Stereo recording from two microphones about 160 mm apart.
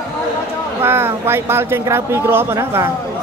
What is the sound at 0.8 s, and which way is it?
Speech, 15° right (ahead or behind).